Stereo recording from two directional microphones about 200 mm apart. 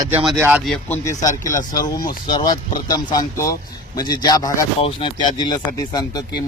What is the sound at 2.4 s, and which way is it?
Speech, 20° left (ahead or behind).